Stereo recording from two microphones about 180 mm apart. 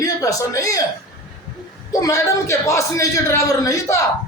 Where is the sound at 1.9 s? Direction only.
20° left (ahead or behind).